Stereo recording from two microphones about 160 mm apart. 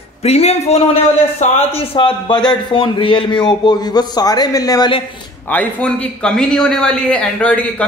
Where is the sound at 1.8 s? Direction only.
35° left (ahead or behind).